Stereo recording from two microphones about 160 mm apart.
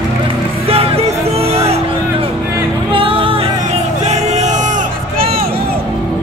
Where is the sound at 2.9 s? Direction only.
35° right (ahead or behind).